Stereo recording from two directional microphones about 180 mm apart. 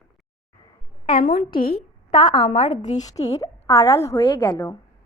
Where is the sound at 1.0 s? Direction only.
30° left (ahead or behind).